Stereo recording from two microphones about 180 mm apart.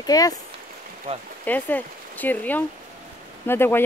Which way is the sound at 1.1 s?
30° right (ahead or behind).